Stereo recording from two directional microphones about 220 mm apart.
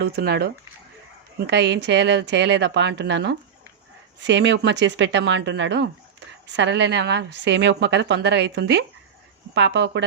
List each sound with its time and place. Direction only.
0.0 s a woman's voice: 45° right (ahead or behind)